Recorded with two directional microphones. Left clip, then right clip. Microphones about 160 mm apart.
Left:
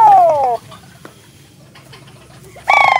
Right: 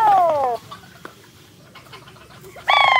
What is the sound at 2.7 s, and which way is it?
Fowl, 5° right (ahead or behind).